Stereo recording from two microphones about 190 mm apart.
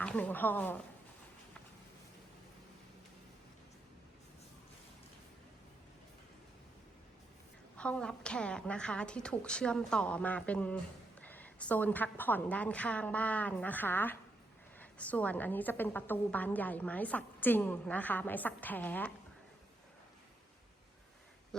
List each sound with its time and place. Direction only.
0.0 s a woman's voice: 5° left (ahead or behind)
7.8 s a woman's voice: 5° left (ahead or behind)